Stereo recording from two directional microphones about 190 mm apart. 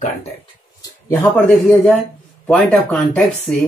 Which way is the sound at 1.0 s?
10° left (ahead or behind).